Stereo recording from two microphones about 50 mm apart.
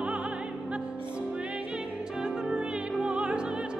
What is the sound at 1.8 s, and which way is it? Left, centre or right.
Music, centre.